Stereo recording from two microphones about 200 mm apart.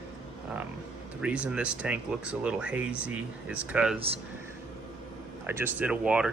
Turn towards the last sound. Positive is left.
turn(degrees=-5)  # may be behind; listen again after turning